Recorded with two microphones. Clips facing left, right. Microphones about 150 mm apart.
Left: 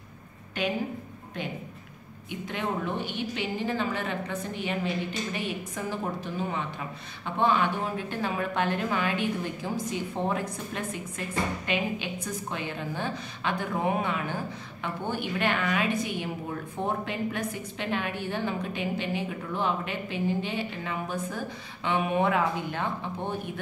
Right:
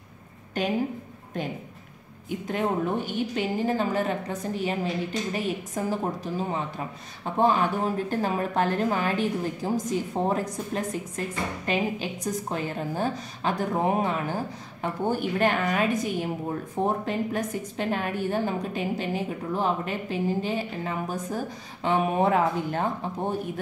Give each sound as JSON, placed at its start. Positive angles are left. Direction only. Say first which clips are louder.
{"t": 0.6, "sound": "a woman's voice", "louder": "right 2 dB", "side_deg": -45}
{"t": 2.2, "sound": "a woman's voice", "louder": "right 5 dB", "side_deg": -40}